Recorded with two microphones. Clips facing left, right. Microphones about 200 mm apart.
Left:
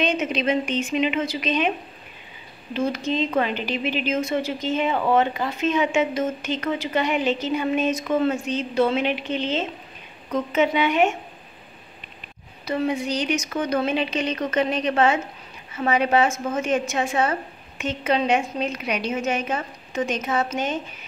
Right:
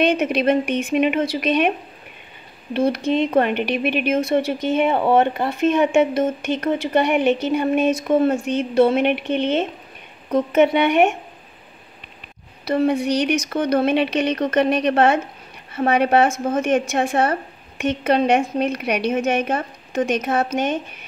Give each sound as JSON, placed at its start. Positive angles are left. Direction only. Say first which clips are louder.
{"t": 0.0, "sound": "a woman's voice", "louder": "right 5 dB", "side_deg": -60}
{"t": 2.9, "sound": "a woman's voice", "louder": "right 5 dB", "side_deg": -60}
{"t": 12.6, "sound": "a woman's voice", "louder": "right 5 dB", "side_deg": -60}